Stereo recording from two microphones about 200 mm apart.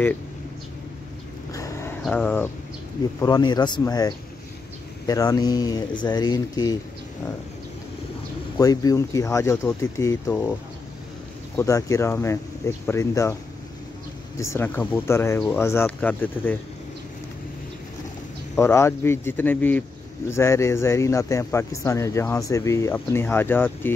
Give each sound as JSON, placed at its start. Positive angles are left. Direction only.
{"t": 1.5, "sound": "a sound", "side_deg": 15}
{"t": 2.0, "sound": "speech", "side_deg": 5}
{"t": 3.2, "sound": "speech", "side_deg": 20}
{"t": 8.5, "sound": "speech", "side_deg": 15}
{"t": 11.5, "sound": "speech", "side_deg": 15}
{"t": 14.5, "sound": "speech", "side_deg": 10}
{"t": 18.6, "sound": "speech", "side_deg": 15}